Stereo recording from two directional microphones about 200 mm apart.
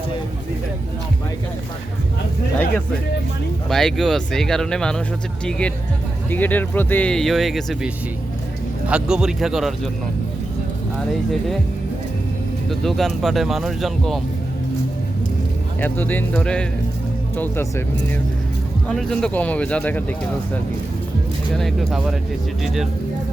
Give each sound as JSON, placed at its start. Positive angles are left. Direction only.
{"t": 3.7, "sound": "speech", "side_deg": 0}
{"t": 8.9, "sound": "speech", "side_deg": -5}
{"t": 12.8, "sound": "speech", "side_deg": 0}
{"t": 15.8, "sound": "speech", "side_deg": 10}
{"t": 18.9, "sound": "speech", "side_deg": 0}
{"t": 21.5, "sound": "speech", "side_deg": 0}